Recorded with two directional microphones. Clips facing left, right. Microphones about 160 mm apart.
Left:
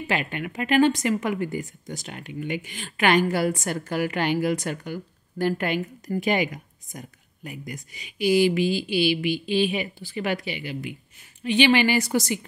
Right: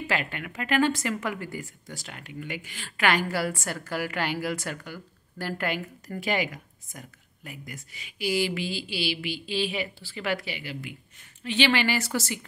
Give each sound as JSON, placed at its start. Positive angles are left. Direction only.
{"t": 0.0, "sound": "a woman's voice", "side_deg": 20}